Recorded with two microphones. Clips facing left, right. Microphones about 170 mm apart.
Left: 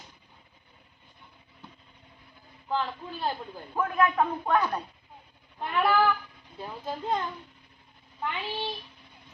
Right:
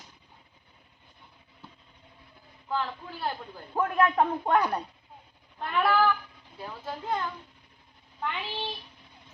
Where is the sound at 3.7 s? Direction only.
25° right (ahead or behind).